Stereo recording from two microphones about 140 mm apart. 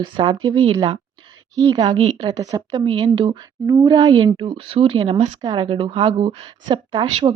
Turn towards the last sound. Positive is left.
turn(degrees=-35)  # may be behind; listen again after turning